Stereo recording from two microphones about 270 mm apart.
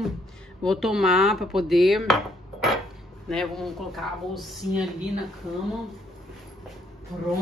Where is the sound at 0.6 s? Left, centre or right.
Centre.